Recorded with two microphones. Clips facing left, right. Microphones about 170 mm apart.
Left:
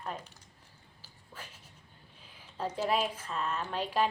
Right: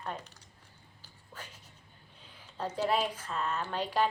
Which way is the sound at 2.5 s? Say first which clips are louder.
Even; 5° left (ahead or behind).